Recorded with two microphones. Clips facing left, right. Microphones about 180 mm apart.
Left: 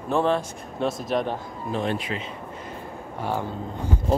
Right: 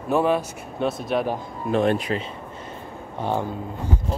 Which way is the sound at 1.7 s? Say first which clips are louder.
Right 6 dB; 50° right (ahead or behind).